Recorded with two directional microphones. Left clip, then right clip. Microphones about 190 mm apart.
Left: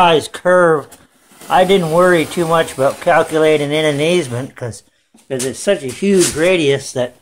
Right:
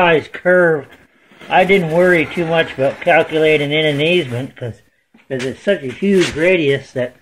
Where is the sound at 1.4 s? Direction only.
15° left (ahead or behind).